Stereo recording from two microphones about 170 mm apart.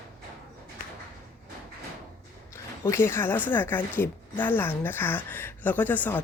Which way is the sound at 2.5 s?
15° left (ahead or behind).